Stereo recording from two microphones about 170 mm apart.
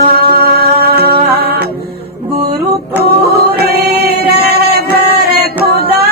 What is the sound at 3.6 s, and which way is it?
Music, 65° right (ahead or behind).